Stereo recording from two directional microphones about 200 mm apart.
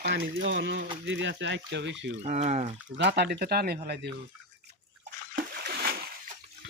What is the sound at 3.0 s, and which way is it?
Speech, 55° right (ahead or behind).